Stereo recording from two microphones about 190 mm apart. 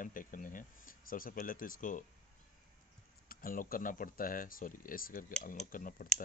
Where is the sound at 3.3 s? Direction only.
50° left (ahead or behind).